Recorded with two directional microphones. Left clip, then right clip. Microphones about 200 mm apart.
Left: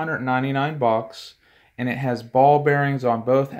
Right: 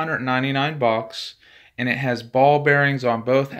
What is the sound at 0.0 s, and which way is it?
Speech, 5° right (ahead or behind).